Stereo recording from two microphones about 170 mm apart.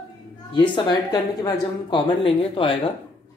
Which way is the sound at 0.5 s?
25° left (ahead or behind).